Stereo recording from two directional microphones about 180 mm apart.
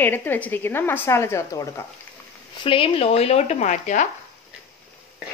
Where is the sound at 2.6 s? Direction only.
30° left (ahead or behind).